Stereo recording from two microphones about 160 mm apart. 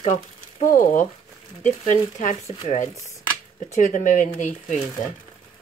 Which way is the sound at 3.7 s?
55° left (ahead or behind).